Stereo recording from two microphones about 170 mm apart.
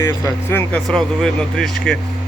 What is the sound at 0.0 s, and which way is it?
Speech, 15° left (ahead or behind).